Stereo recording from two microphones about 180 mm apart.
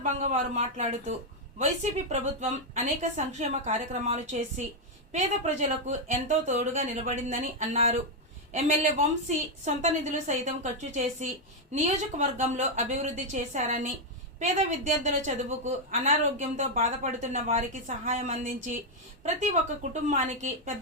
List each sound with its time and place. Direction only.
0.0 s a woman's voice: 40° right (ahead or behind)
19.9 s a woman's voice: 45° right (ahead or behind)